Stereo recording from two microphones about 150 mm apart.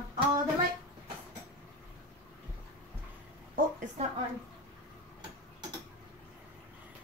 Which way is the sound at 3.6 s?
70° right (ahead or behind).